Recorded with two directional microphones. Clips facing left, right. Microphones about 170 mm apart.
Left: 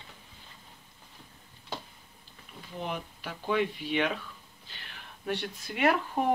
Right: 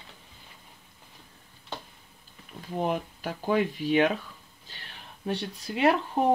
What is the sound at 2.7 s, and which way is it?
Speech, 45° right (ahead or behind).